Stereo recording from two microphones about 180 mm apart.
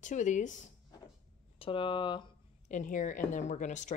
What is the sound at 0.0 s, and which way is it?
Speech, 45° left (ahead or behind).